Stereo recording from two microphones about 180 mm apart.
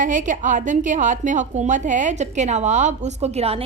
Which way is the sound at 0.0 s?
45° right (ahead or behind).